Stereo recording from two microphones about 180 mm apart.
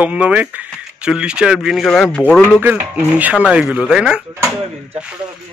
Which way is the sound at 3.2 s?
5° right (ahead or behind).